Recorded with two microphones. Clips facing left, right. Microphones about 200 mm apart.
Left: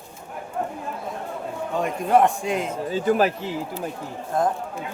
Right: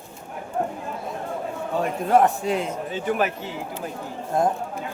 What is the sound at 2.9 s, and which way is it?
Speech, 35° left (ahead or behind).